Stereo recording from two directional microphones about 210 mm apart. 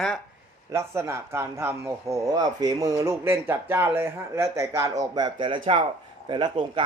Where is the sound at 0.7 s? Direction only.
15° right (ahead or behind).